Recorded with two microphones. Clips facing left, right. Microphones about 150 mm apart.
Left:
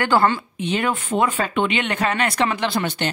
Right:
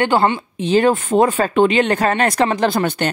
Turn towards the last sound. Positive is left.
turn(degrees=-45)  # may be behind; listen again after turning